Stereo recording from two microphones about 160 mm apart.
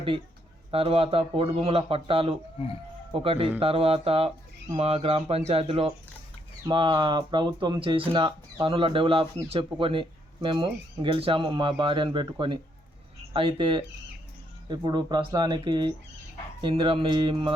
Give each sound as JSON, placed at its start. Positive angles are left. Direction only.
{"t": 0.7, "sound": "a man's voice", "side_deg": -35}